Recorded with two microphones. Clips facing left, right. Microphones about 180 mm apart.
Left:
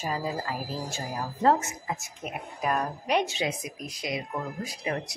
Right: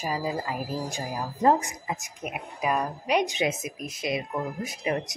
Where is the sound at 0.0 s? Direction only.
10° right (ahead or behind).